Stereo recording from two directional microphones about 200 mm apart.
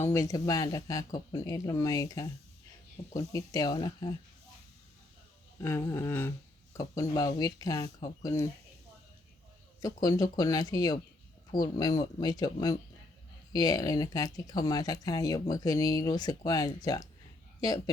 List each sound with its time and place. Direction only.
0.0 s speech: 15° left (ahead or behind)
5.5 s speech: 15° left (ahead or behind)
9.8 s speech: 20° left (ahead or behind)